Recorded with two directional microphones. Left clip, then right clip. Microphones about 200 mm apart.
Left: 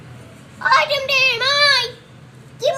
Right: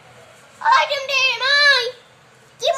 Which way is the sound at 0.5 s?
5° left (ahead or behind).